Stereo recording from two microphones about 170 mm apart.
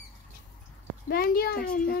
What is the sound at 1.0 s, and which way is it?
Speech, 60° left (ahead or behind).